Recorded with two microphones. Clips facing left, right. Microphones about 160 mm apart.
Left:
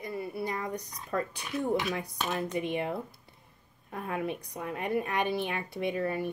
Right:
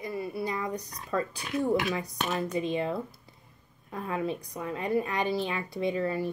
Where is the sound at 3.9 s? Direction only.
55° left (ahead or behind).